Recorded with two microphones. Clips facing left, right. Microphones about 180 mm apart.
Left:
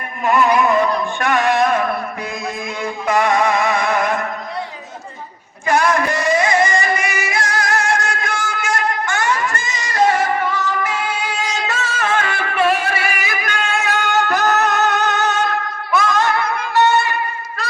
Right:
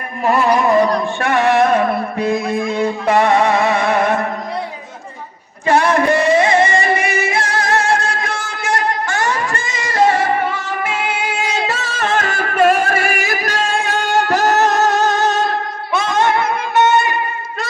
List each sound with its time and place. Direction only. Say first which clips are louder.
0.2 s music: right 1 dB; 30° right (ahead or behind)
5.6 s music: right 3 dB; 30° right (ahead or behind)